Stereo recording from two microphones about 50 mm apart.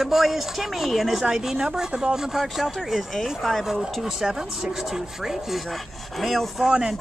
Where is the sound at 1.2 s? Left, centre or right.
Centre.